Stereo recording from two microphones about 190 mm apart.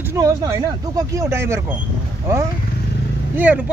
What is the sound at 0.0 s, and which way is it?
Speech, 15° right (ahead or behind).